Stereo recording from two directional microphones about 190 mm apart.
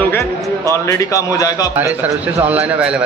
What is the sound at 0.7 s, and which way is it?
Speech, 15° left (ahead or behind).